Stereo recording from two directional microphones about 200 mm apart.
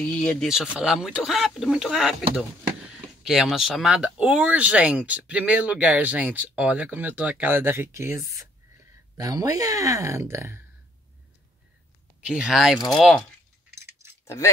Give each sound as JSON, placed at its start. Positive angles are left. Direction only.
{"t": 0.0, "sound": "speech", "side_deg": 5}
{"t": 12.2, "sound": "speech", "side_deg": -5}
{"t": 14.2, "sound": "speech", "side_deg": 15}